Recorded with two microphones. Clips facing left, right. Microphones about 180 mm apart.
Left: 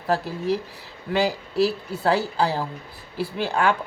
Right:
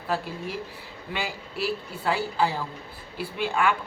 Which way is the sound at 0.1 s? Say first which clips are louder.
Left 7 dB; 40° left (ahead or behind).